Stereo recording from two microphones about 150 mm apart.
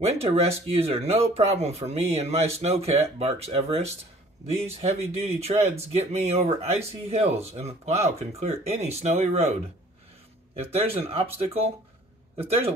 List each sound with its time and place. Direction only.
0.0 s speech: 45° right (ahead or behind)
12.4 s speech: 40° right (ahead or behind)